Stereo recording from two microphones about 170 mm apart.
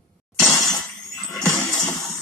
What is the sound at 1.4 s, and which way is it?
Music, 20° left (ahead or behind).